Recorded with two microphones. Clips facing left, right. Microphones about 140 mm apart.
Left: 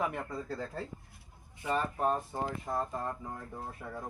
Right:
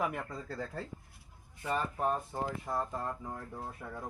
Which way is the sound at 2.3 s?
Centre (ahead or behind).